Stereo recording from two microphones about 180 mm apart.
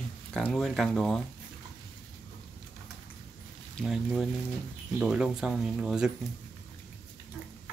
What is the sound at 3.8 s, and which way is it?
Speech, centre (ahead or behind).